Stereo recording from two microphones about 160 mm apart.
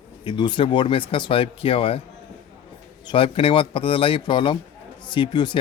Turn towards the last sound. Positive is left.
turn(degrees=30)  # may be behind; listen again after turning